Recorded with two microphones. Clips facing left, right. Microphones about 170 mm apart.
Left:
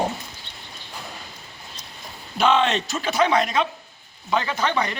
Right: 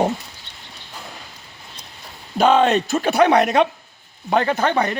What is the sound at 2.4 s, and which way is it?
Speech, 45° right (ahead or behind).